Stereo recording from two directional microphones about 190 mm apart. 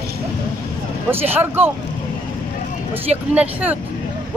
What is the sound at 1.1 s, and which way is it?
Speech, 10° right (ahead or behind).